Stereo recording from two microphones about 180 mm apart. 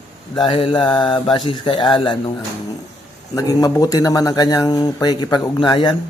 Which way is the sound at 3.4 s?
20° left (ahead or behind).